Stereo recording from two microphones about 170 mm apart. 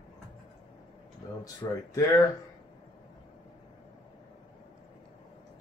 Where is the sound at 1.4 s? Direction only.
20° left (ahead or behind).